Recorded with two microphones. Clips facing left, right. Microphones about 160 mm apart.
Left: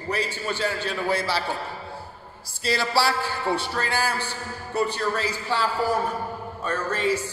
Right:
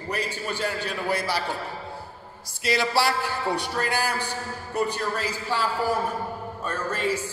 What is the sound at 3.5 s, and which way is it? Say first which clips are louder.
A man's voice: left 1 dB; 15° right (ahead or behind).